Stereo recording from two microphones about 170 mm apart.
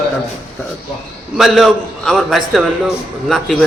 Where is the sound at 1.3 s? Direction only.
Centre (ahead or behind).